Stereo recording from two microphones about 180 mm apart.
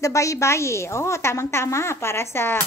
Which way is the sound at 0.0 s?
15° left (ahead or behind).